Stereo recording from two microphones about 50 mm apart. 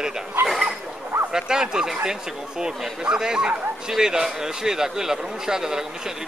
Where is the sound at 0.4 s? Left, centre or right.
Right.